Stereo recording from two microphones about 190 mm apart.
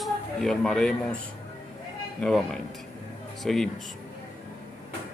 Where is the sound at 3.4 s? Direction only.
Centre (ahead or behind).